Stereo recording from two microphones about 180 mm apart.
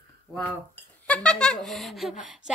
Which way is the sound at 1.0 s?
5° left (ahead or behind).